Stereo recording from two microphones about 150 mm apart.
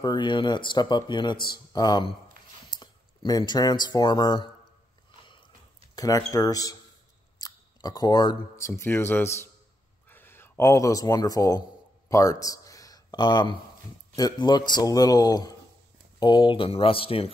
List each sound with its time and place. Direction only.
0.0 s a man's voice: 30° left (ahead or behind)
5.9 s a man's voice: 25° left (ahead or behind)
12.1 s a sound: 20° left (ahead or behind)
14.1 s a man's voice: 25° left (ahead or behind)